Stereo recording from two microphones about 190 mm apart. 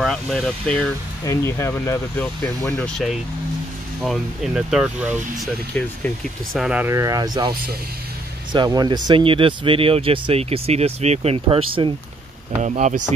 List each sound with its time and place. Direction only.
0.0 s speech: centre (ahead or behind)
1.2 s speech: 15° left (ahead or behind); by 5.5 s 5° right (ahead or behind)
5.8 s speech: 5° left (ahead or behind)
6.6 s speech: 10° right (ahead or behind)
8.5 s speech: 20° right (ahead or behind)
12.6 s speech: 40° right (ahead or behind)